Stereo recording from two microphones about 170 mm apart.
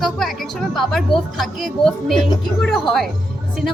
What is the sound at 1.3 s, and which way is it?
Speech, centre (ahead or behind).